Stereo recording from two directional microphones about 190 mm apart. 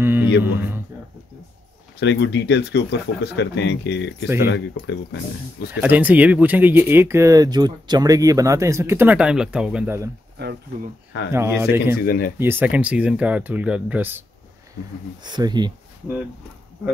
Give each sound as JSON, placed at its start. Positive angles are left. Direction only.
{"t": 0.0, "sound": "a sound", "side_deg": -10}
{"t": 0.4, "sound": "speech", "side_deg": -10}
{"t": 2.0, "sound": "speech", "side_deg": 65}
{"t": 5.7, "sound": "speech", "side_deg": -10}
{"t": 11.3, "sound": "speech", "side_deg": -10}
{"t": 12.0, "sound": "speech", "side_deg": 50}
{"t": 12.4, "sound": "speech", "side_deg": -10}
{"t": 15.2, "sound": "speech", "side_deg": -20}